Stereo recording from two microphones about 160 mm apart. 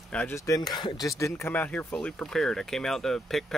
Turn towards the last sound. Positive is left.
turn(degrees=5)  # may be behind; listen again after turning